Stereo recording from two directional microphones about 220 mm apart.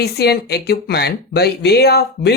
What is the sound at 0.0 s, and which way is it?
Speech, 45° left (ahead or behind).